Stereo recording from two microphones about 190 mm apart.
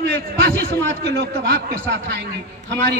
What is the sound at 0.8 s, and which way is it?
A man's voice, 65° right (ahead or behind).